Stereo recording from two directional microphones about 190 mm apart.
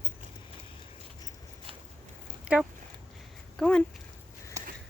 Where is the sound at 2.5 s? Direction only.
5° right (ahead or behind).